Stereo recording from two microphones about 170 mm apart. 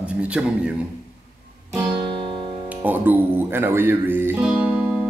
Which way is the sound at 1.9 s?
30° right (ahead or behind).